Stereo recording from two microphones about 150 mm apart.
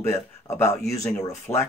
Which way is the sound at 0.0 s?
15° left (ahead or behind).